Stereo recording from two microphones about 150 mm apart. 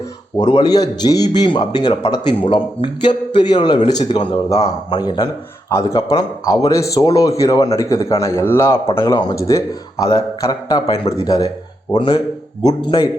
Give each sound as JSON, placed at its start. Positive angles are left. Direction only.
{"t": 0.3, "sound": "a man's voice", "side_deg": 30}
{"t": 12.8, "sound": "speech", "side_deg": 30}